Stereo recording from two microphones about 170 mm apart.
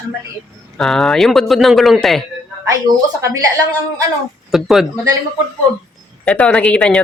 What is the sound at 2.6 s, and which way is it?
Speech, 20° right (ahead or behind).